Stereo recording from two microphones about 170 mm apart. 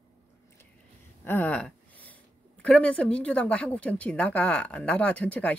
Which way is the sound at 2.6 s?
5° left (ahead or behind).